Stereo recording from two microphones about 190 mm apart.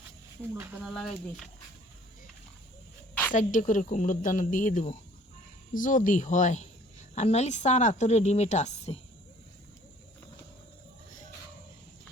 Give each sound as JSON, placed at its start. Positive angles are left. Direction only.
{"t": 0.8, "sound": "speech", "side_deg": 0}
{"t": 3.3, "sound": "a woman's voice", "side_deg": 45}